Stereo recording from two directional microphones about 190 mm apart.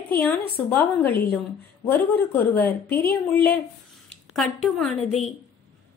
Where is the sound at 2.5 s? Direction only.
10° left (ahead or behind).